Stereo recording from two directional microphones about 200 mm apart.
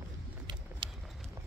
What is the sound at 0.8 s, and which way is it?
Horse, 25° right (ahead or behind).